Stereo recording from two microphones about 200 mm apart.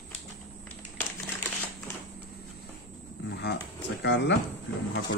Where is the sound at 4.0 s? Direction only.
60° left (ahead or behind).